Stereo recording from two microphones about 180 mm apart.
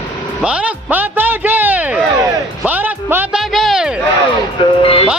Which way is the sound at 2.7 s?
10° right (ahead or behind).